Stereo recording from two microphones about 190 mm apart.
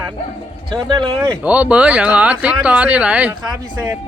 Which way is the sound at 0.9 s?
25° right (ahead or behind).